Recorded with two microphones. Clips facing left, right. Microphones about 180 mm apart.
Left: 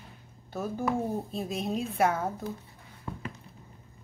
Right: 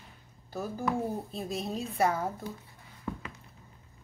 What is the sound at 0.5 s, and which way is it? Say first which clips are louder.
Speech: left 2 dB; centre (ahead or behind).